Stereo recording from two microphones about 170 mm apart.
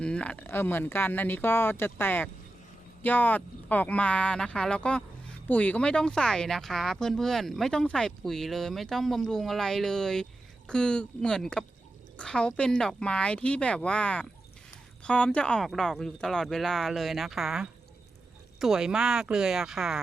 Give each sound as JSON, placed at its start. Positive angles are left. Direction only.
{"t": 0.0, "sound": "speech", "side_deg": 5}